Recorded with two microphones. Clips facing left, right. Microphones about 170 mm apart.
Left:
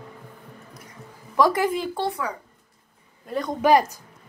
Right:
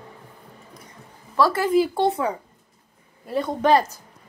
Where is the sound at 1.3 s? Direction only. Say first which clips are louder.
Left 1 dB; 15° left (ahead or behind).